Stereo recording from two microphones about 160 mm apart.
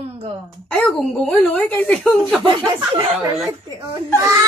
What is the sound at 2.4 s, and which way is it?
Speech, 30° right (ahead or behind).